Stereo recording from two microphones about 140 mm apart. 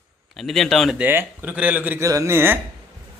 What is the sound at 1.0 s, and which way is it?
A man's voice, 15° right (ahead or behind).